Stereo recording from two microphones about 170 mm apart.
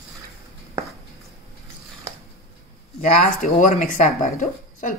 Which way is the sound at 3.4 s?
45° left (ahead or behind).